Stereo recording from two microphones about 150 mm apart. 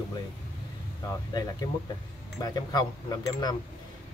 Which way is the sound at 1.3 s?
25° left (ahead or behind).